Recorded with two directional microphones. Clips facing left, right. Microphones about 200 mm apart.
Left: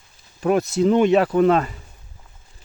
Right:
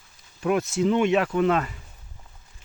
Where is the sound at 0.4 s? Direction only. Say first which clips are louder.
Left 4 dB; 35° left (ahead or behind).